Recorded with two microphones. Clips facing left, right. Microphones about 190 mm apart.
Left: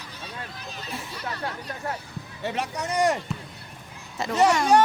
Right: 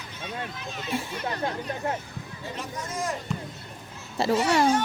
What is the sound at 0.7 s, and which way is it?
Speech, 35° left (ahead or behind).